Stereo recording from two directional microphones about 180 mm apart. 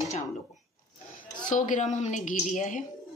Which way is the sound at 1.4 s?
45° left (ahead or behind).